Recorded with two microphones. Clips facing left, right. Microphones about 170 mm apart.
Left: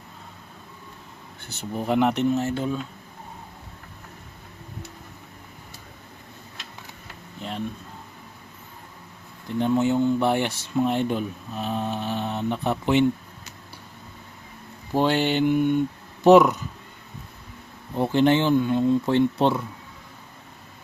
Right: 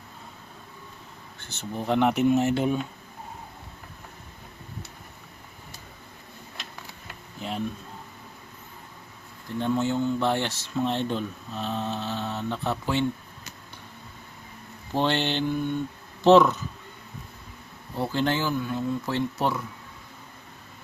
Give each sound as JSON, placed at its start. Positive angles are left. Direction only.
{"t": 1.4, "sound": "speech", "side_deg": 10}
{"t": 2.3, "sound": "speech", "side_deg": -15}
{"t": 9.6, "sound": "speech", "side_deg": 15}
{"t": 14.9, "sound": "speech", "side_deg": 10}
{"t": 17.9, "sound": "speech", "side_deg": 20}